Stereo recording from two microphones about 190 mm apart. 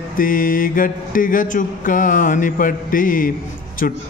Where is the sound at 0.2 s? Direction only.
45° left (ahead or behind).